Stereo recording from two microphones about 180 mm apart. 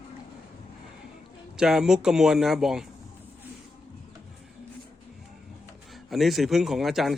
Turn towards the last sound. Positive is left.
turn(degrees=0)  # may be behind; listen again after turning